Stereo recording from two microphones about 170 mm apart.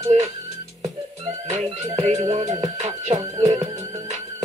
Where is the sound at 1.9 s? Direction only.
40° right (ahead or behind).